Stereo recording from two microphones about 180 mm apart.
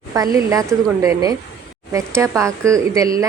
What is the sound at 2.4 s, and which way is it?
Speech, 15° right (ahead or behind).